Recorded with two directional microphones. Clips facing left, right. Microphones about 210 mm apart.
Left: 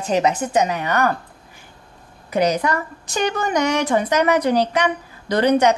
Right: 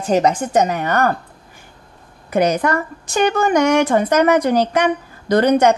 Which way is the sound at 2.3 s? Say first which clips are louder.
Right 2 dB; 50° right (ahead or behind).